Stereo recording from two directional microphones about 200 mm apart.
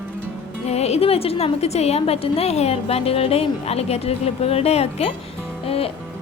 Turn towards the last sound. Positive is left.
turn(degrees=30)  # may be behind; listen again after turning